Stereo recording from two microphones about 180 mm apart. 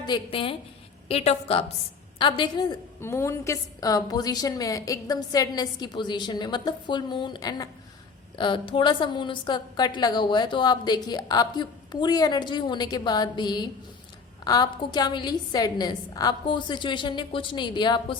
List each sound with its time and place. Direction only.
0.0 s a woman's voice: 25° left (ahead or behind)
3.0 s a woman's voice: 15° left (ahead or behind)